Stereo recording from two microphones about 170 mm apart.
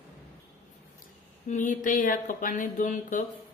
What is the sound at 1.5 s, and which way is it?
Mantra, 50° left (ahead or behind).